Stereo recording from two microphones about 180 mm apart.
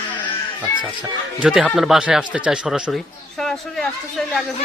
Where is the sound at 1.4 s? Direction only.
5° right (ahead or behind).